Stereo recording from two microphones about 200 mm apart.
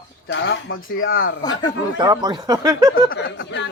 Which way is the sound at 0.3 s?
65° left (ahead or behind).